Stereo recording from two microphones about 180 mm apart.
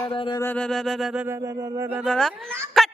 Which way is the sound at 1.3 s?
20° right (ahead or behind).